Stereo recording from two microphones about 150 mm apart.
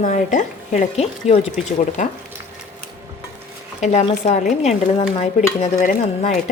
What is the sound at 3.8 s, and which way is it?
Stir, 50° left (ahead or behind).